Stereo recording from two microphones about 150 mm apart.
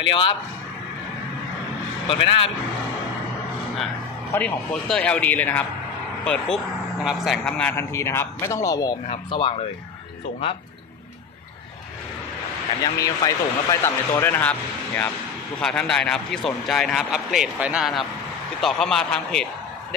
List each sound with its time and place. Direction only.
2.0 s speech: 35° left (ahead or behind)
4.3 s speech: 15° left (ahead or behind)
9.1 s speech: 35° left (ahead or behind)
12.8 s a man's voice: 25° left (ahead or behind); by 19.4 s 5° left (ahead or behind)